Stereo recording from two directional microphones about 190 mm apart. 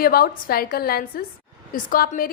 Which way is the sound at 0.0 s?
50° left (ahead or behind).